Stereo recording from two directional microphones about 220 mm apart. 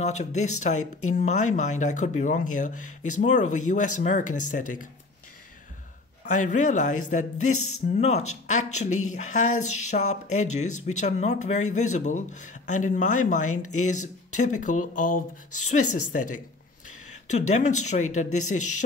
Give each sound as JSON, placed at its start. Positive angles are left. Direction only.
{"t": 0.0, "sound": "speech", "side_deg": 30}
{"t": 6.2, "sound": "speech", "side_deg": 35}
{"t": 13.5, "sound": "speech", "side_deg": 90}
{"t": 13.7, "sound": "speech", "side_deg": 35}